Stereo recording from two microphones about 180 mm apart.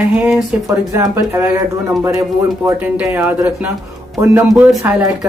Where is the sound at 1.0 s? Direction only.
15° right (ahead or behind).